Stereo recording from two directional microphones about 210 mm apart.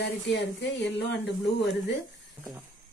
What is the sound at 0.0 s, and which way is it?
Speech, 55° left (ahead or behind).